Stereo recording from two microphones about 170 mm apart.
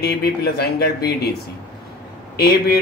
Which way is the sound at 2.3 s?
65° left (ahead or behind).